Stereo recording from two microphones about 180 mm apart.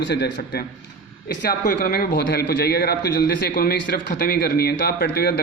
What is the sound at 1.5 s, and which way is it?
A man's voice, 55° left (ahead or behind).